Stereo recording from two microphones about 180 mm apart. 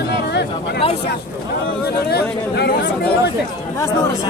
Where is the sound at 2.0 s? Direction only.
65° left (ahead or behind).